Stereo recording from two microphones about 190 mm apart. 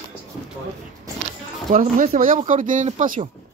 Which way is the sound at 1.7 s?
35° right (ahead or behind).